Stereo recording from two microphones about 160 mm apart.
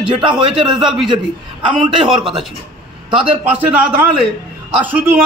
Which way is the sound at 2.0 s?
5° right (ahead or behind).